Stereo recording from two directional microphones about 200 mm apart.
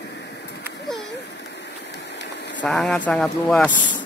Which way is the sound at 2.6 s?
Centre (ahead or behind).